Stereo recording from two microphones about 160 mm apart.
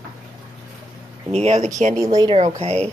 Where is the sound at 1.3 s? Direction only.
40° right (ahead or behind).